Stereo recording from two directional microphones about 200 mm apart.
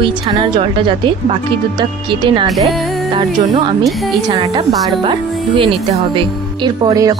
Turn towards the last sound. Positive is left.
turn(degrees=-20)  # may be behind; listen again after turning